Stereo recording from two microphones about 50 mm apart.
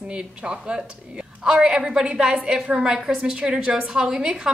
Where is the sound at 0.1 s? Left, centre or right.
Centre.